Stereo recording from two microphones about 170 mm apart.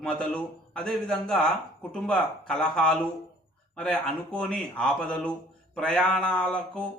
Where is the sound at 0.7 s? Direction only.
5° left (ahead or behind).